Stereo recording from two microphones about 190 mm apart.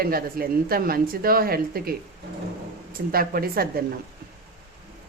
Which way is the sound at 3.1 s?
50° right (ahead or behind).